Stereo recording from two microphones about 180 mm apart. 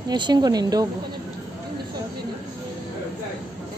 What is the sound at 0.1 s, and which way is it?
Speech, 25° right (ahead or behind).